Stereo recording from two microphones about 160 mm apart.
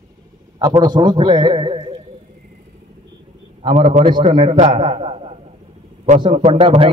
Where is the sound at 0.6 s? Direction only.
25° right (ahead or behind).